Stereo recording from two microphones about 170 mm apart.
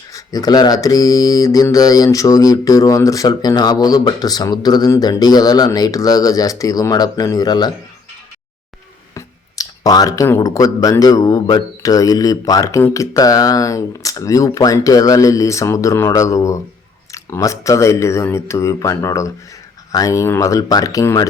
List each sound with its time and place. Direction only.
0.1 s mantra: 20° left (ahead or behind)
9.1 s mantra: 20° left (ahead or behind)
17.1 s speech: 15° left (ahead or behind)
19.9 s mantra: 20° left (ahead or behind)